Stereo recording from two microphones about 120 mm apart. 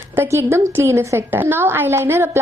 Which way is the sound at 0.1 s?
20° right (ahead or behind).